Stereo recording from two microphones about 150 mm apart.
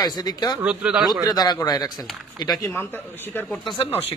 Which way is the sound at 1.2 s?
25° left (ahead or behind).